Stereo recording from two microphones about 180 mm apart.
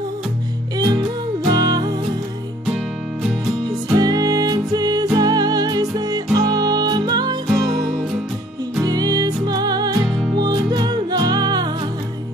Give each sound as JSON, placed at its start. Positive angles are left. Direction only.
{"t": 1.5, "sound": "music", "side_deg": -20}
{"t": 3.6, "sound": "music", "side_deg": -20}
{"t": 8.8, "sound": "music", "side_deg": -20}